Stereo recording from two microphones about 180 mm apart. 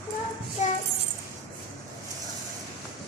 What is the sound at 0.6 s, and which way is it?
Music, 40° left (ahead or behind).